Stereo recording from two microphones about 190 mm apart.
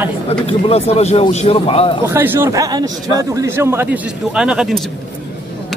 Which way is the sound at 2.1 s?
10° right (ahead or behind).